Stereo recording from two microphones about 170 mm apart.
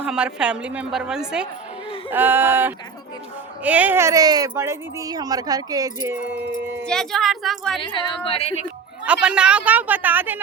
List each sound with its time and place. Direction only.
0.0 s a woman's voice: 5° right (ahead or behind)
6.8 s a woman's voice: 5° left (ahead or behind)
7.8 s a woman's voice: 30° left (ahead or behind)
9.0 s a woman's voice: 5° right (ahead or behind)